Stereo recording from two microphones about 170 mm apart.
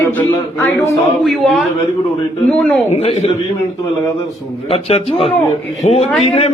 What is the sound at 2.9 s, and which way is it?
Speech, 40° left (ahead or behind).